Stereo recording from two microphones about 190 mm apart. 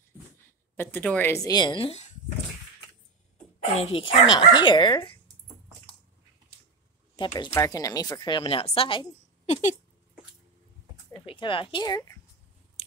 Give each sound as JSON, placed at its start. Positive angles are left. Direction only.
{"t": 0.7, "sound": "a woman's voice", "side_deg": 10}
{"t": 3.7, "sound": "a woman's voice", "side_deg": 30}
{"t": 7.2, "sound": "a woman's voice", "side_deg": 25}
{"t": 9.5, "sound": "speech", "side_deg": 40}
{"t": 11.1, "sound": "a woman's voice", "side_deg": 25}